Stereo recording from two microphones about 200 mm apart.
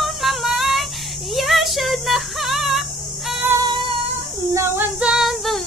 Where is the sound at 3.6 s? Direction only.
25° right (ahead or behind).